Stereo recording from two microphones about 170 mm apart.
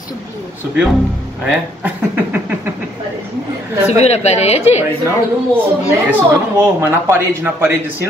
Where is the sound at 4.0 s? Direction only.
40° left (ahead or behind).